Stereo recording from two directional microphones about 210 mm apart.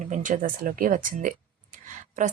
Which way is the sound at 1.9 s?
35° right (ahead or behind).